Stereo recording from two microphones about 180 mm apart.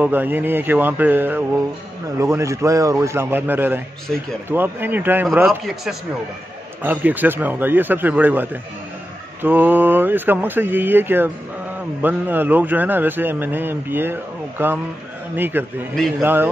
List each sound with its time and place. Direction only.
0.0 s a man's voice: 10° right (ahead or behind)